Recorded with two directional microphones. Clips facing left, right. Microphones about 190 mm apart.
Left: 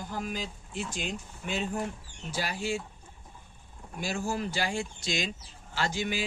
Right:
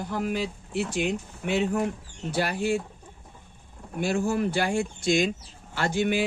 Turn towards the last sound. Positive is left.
turn(degrees=-60)  # may be behind; listen again after turning